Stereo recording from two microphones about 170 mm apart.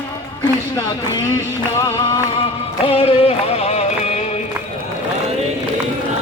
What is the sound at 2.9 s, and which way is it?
Music, 35° left (ahead or behind).